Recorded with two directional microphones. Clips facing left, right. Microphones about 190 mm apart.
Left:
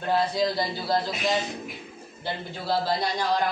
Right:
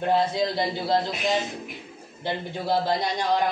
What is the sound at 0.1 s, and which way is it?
Speech, 25° right (ahead or behind).